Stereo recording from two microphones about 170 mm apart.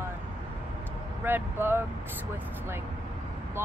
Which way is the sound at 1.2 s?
15° right (ahead or behind).